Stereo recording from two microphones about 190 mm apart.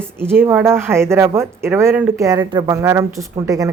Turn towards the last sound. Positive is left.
turn(degrees=-20)  # may be behind; listen again after turning